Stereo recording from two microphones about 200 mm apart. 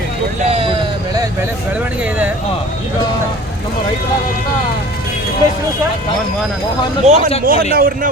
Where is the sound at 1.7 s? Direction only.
5° right (ahead or behind).